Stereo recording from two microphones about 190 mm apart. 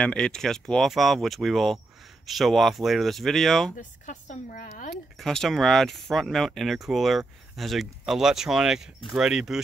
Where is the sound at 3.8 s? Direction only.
40° left (ahead or behind).